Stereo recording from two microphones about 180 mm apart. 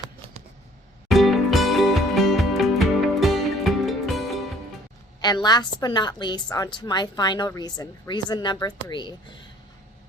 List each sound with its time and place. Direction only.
1.0 s music: centre (ahead or behind)
5.2 s a woman's voice: 25° left (ahead or behind)